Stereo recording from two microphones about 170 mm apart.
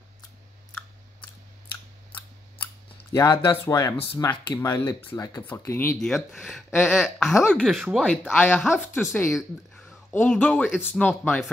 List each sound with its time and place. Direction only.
3.1 s speech: 20° left (ahead or behind)
5.9 s speech: centre (ahead or behind)
9.3 s a sound: centre (ahead or behind)
10.3 s speech: 5° left (ahead or behind)